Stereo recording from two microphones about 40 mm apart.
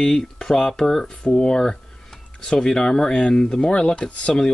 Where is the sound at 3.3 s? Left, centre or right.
Centre.